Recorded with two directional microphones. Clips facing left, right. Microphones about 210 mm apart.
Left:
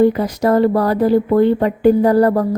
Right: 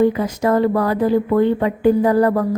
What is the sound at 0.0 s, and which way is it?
A woman's voice, 35° left (ahead or behind).